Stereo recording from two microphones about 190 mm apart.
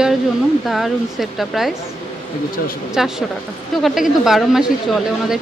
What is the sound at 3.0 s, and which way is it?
Speech, centre (ahead or behind).